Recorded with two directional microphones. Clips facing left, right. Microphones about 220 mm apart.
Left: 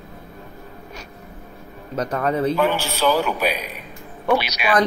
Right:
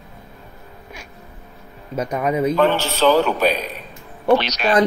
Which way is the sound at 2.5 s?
10° left (ahead or behind).